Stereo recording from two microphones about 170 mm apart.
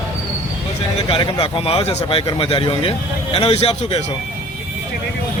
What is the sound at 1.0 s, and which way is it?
Speech, 30° left (ahead or behind).